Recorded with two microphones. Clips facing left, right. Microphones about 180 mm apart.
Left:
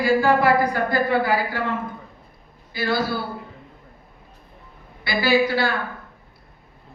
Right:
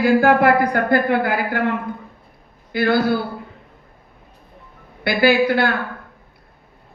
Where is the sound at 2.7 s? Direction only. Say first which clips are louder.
Right 6 dB; 60° right (ahead or behind).